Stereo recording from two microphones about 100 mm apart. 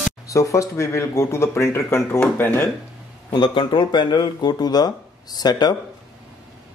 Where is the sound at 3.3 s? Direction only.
50° left (ahead or behind).